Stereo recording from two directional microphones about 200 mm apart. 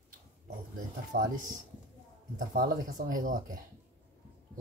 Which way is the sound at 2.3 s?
45° right (ahead or behind).